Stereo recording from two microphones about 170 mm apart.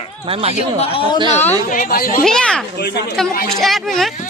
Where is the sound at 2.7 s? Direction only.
75° left (ahead or behind).